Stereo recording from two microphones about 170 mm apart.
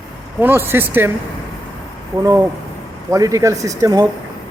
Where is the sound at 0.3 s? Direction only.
10° right (ahead or behind).